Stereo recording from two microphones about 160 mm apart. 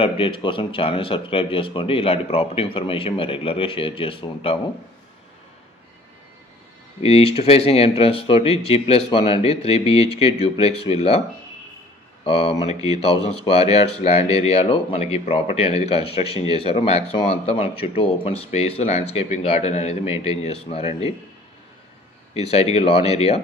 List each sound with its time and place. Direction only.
0.0 s speech: 35° left (ahead or behind)
7.0 s speech: 40° left (ahead or behind)
12.3 s speech: 35° left (ahead or behind)
22.3 s speech: 40° left (ahead or behind)